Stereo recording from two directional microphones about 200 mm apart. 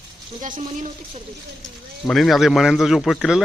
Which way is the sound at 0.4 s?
40° right (ahead or behind).